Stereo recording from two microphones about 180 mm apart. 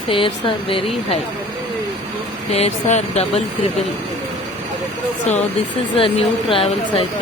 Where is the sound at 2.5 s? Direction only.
35° left (ahead or behind).